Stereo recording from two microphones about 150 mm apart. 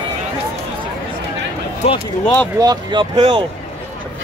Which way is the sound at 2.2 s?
10° left (ahead or behind).